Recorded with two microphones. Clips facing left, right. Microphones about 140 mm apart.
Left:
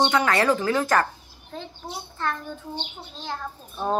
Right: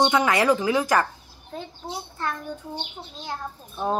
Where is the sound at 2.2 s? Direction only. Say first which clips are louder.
Left 1 dB; 10° right (ahead or behind).